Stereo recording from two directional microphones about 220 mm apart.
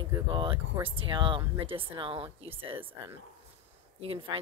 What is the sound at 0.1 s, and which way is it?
A woman's voice, 20° right (ahead or behind).